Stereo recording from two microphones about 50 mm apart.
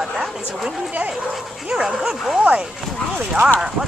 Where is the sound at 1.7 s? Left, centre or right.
Centre.